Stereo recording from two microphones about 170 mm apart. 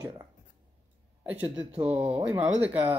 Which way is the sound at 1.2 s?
10° right (ahead or behind).